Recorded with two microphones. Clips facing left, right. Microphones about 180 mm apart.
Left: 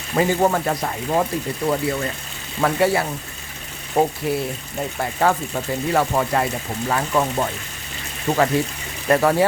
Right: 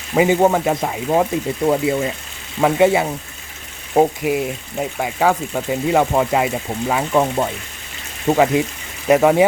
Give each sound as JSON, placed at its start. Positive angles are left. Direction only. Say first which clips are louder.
{"t": 0.2, "sound": "speech", "louder": "right 4 dB", "side_deg": -15}